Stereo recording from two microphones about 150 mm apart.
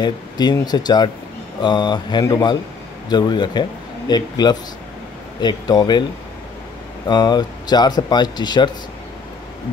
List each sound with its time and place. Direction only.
0.0 s speech: 30° left (ahead or behind)
7.1 s speech: 30° left (ahead or behind)